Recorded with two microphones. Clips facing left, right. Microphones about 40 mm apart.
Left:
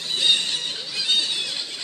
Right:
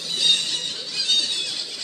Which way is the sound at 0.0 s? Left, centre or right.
Left.